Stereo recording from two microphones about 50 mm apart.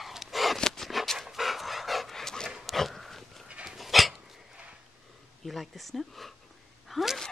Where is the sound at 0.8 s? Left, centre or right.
Centre.